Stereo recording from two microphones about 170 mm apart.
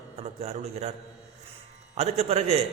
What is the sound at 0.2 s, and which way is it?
Speech, 40° right (ahead or behind).